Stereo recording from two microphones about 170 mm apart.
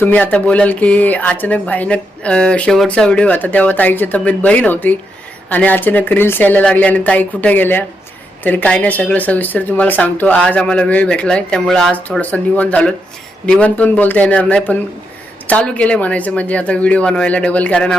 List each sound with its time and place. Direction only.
0.0 s speech: 10° left (ahead or behind)